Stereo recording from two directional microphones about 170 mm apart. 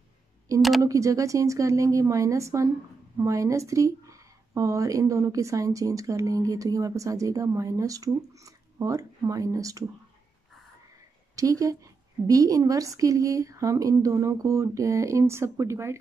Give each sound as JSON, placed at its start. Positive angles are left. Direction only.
{"t": 0.6, "sound": "speech", "side_deg": 0}
{"t": 0.8, "sound": "speech", "side_deg": -20}
{"t": 11.3, "sound": "speech", "side_deg": -20}